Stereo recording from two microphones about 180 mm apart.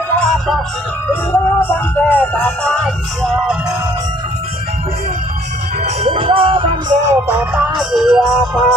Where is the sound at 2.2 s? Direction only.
10° left (ahead or behind).